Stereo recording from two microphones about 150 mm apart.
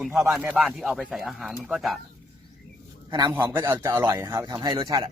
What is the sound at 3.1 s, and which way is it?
Speech, 30° right (ahead or behind).